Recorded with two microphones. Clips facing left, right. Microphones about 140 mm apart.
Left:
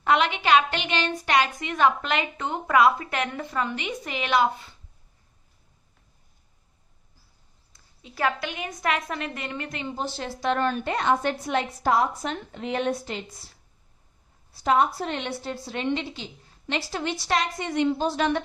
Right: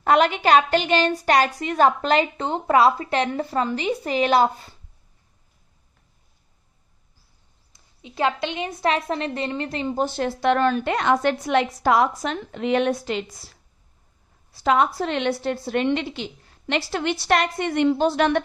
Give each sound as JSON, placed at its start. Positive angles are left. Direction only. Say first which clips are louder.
{"t": 0.0, "sound": "a woman's voice", "louder": "right 5 dB", "side_deg": -40}
{"t": 7.7, "sound": "a woman's voice", "louder": "right 6 dB", "side_deg": -20}
{"t": 9.9, "sound": "a woman's voice", "louder": "right 8 dB", "side_deg": -55}
{"t": 14.5, "sound": "a woman's voice", "louder": "right 2 dB", "side_deg": -90}